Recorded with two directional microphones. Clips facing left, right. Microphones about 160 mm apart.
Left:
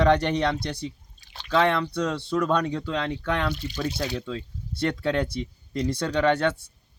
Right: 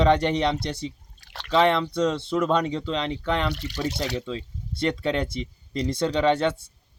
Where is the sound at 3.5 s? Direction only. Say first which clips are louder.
Right 1 dB; 75° right (ahead or behind).